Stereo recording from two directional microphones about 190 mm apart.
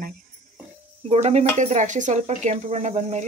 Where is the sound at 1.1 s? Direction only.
35° right (ahead or behind).